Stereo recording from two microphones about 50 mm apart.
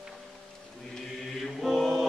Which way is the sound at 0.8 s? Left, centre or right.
Centre.